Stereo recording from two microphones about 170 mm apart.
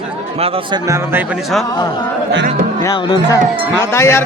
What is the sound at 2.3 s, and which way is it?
Speech, 90° right.